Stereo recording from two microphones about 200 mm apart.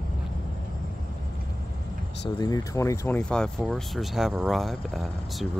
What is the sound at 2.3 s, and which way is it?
Speech, 20° left (ahead or behind).